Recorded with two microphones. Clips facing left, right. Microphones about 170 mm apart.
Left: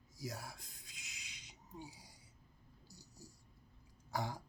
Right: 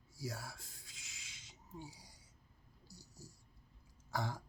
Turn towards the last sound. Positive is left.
turn(degrees=15)  # may be behind; listen again after turning